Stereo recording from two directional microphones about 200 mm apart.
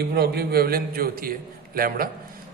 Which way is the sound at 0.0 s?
50° right (ahead or behind).